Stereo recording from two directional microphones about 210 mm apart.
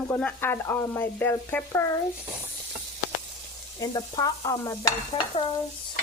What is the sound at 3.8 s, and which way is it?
Frying, 15° left (ahead or behind).